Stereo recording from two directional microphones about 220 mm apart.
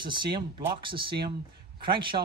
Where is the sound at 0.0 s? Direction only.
20° right (ahead or behind).